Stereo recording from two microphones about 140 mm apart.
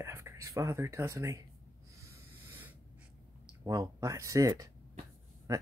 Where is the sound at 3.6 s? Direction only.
25° right (ahead or behind).